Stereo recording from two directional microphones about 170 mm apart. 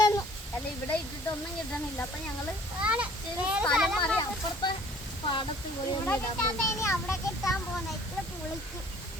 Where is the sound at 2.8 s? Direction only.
5° right (ahead or behind).